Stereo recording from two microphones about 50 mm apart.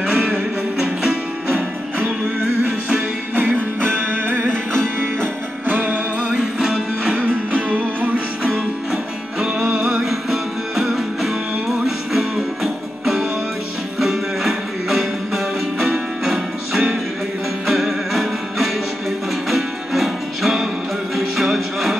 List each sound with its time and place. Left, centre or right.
0.1 s music: right
1.5 s music: right
4.0 s music: right
5.7 s music: right
6.2 s music: centre
7.2 s music: right
8.5 s music: centre